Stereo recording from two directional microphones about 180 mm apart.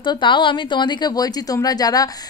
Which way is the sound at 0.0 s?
25° left (ahead or behind).